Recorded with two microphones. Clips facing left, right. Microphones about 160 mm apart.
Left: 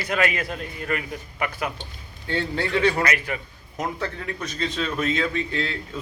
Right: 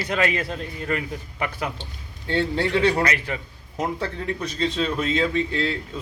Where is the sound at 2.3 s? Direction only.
30° right (ahead or behind).